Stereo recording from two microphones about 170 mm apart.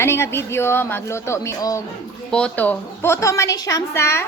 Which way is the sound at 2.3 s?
10° left (ahead or behind).